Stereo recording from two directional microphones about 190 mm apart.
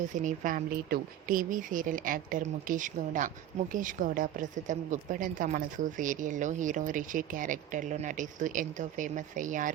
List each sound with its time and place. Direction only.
0.0 s speech: 40° right (ahead or behind)